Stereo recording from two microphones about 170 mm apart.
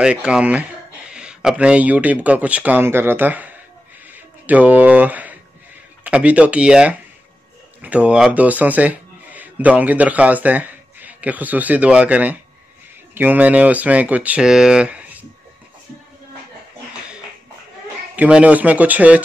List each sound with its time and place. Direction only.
0.0 s speech: 5° right (ahead or behind)
4.1 s a sound: 10° right (ahead or behind)
6.0 s speech: 5° right (ahead or behind)
18.1 s speech: 10° right (ahead or behind)